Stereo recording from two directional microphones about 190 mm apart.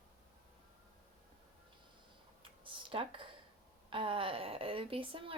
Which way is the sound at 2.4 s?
30° right (ahead or behind).